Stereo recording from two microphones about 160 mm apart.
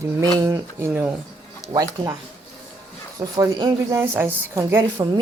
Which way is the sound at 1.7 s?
25° right (ahead or behind).